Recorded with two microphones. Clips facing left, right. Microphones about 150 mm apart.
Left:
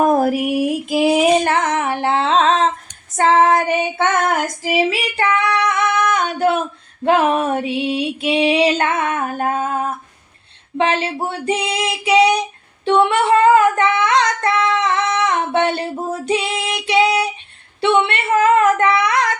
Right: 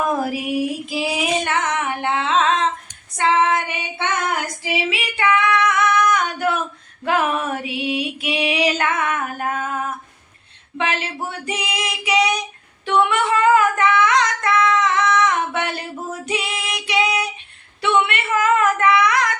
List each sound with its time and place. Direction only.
0.0 s music: 45° left (ahead or behind)
1.5 s female singing: 35° left (ahead or behind)
17.7 s a sound: 30° left (ahead or behind)